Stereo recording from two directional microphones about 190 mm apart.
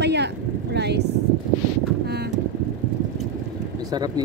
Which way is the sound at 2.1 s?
60° right (ahead or behind).